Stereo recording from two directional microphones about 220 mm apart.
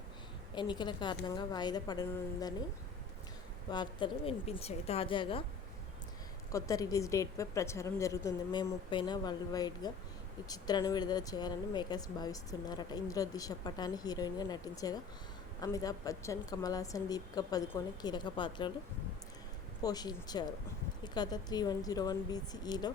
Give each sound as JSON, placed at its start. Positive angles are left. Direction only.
{"t": 0.5, "sound": "a woman's voice", "side_deg": 20}
{"t": 3.7, "sound": "a woman's voice", "side_deg": 20}
{"t": 6.5, "sound": "speech", "side_deg": 15}
{"t": 19.8, "sound": "speech", "side_deg": 15}